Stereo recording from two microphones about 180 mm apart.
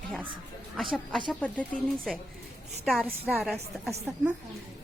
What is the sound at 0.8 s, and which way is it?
A woman's voice, centre (ahead or behind).